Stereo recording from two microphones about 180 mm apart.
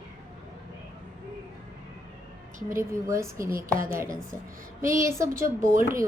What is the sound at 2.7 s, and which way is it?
Speech, 15° right (ahead or behind).